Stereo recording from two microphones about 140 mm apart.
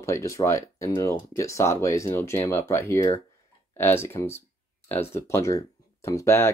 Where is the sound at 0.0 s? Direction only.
20° left (ahead or behind).